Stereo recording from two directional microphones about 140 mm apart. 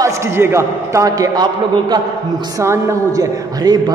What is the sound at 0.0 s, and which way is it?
A man's voice, 20° right (ahead or behind).